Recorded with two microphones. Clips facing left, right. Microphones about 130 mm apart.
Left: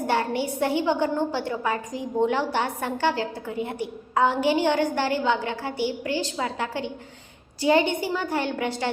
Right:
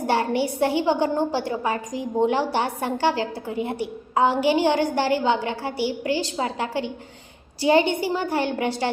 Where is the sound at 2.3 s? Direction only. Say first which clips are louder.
Right 2 dB; 30° right (ahead or behind).